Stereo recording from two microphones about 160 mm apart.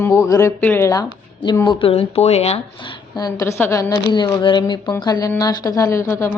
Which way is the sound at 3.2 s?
20° left (ahead or behind).